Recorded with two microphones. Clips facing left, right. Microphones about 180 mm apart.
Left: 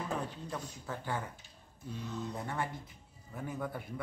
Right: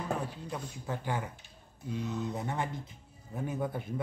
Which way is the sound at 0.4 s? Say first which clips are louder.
Right 2 dB; 15° right (ahead or behind).